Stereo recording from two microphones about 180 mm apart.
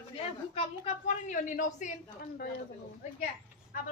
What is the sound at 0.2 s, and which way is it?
A woman's voice, 30° left (ahead or behind).